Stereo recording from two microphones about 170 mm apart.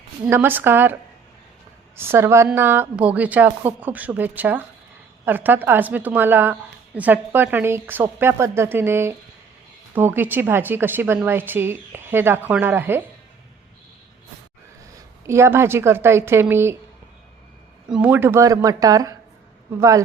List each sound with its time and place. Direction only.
0.3 s a woman's voice: 10° right (ahead or behind)
2.0 s a woman's voice: 15° right (ahead or behind)
15.3 s a woman's voice: 15° right (ahead or behind)
17.8 s speech: 5° right (ahead or behind)